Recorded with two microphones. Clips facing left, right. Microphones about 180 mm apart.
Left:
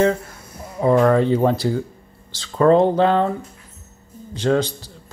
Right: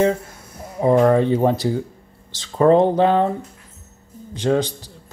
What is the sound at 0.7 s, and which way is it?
A man's voice, 20° right (ahead or behind).